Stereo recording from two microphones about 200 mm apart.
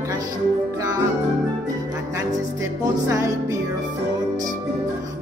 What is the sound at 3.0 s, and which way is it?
Music, 15° right (ahead or behind).